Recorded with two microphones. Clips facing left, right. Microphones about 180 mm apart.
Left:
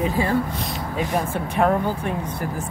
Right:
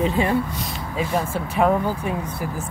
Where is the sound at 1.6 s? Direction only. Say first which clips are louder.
Right 1 dB; 5° right (ahead or behind).